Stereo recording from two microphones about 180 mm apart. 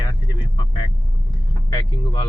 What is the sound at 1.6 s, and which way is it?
Speech, 20° left (ahead or behind).